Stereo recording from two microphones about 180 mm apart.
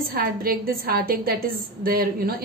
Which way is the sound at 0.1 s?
55° right (ahead or behind).